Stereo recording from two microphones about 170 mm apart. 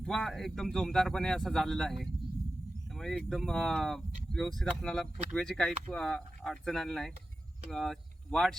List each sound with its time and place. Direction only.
0.0 s speech: centre (ahead or behind)